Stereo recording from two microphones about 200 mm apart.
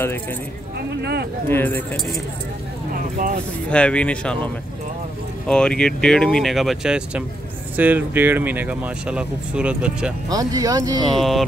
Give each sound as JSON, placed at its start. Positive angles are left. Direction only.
{"t": 0.7, "sound": "speech", "side_deg": -55}
{"t": 1.5, "sound": "speech", "side_deg": 10}
{"t": 3.7, "sound": "speech", "side_deg": 5}
{"t": 5.5, "sound": "speech", "side_deg": 5}
{"t": 10.3, "sound": "speech", "side_deg": -20}
{"t": 11.1, "sound": "speech", "side_deg": 0}